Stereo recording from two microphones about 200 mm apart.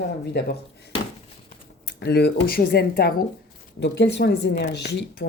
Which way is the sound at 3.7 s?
60° left (ahead or behind).